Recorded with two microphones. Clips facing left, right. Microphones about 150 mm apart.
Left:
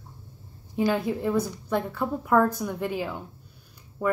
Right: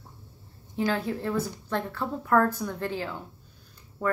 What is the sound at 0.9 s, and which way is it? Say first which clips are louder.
A woman's voice: left 3 dB; 15° left (ahead or behind).